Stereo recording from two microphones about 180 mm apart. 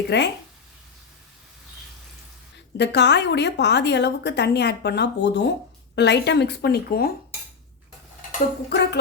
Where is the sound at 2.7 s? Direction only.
70° left (ahead or behind).